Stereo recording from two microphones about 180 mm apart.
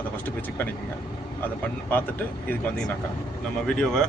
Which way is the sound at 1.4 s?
10° left (ahead or behind).